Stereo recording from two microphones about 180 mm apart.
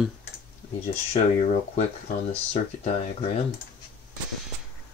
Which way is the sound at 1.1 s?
40° left (ahead or behind).